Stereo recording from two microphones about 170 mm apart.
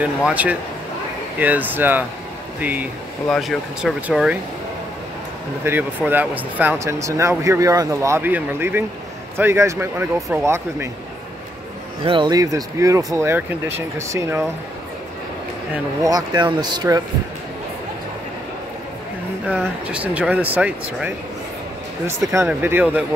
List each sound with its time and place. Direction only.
0.2 s speech: 10° right (ahead or behind)
5.6 s speech: 10° right (ahead or behind)
12.0 s speech: 30° right (ahead or behind)
16.0 s speech: 20° right (ahead or behind)
19.4 s speech: 5° right (ahead or behind)
22.5 s speech: 10° right (ahead or behind)